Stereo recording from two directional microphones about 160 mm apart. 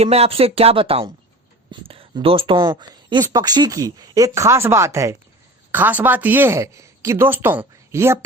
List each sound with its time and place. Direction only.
0.0 s a woman's voice: 40° right (ahead or behind); by 8.2 s 15° right (ahead or behind)